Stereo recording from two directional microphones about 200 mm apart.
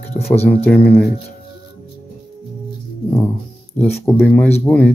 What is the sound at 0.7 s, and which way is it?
Speech, 5° left (ahead or behind).